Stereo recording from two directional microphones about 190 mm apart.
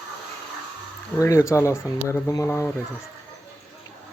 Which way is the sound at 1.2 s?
15° left (ahead or behind).